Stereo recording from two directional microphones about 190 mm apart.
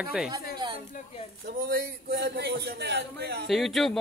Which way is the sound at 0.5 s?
25° right (ahead or behind).